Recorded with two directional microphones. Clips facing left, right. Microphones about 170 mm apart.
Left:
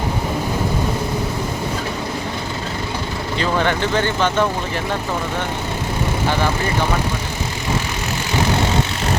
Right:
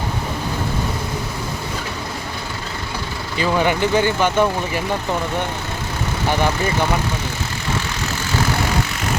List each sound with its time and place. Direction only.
3.3 s speech: 10° right (ahead or behind)